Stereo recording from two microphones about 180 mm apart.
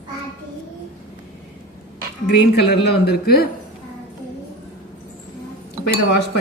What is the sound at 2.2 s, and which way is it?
A woman's voice, 60° left (ahead or behind).